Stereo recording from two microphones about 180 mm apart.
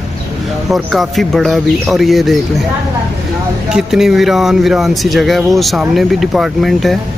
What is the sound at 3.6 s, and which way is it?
Speech, 5° right (ahead or behind).